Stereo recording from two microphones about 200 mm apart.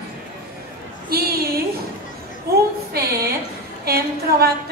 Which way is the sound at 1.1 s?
50° right (ahead or behind).